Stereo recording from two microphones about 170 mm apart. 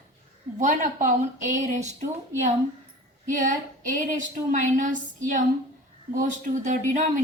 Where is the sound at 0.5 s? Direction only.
45° right (ahead or behind).